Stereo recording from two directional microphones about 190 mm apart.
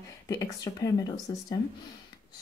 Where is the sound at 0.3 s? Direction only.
20° left (ahead or behind).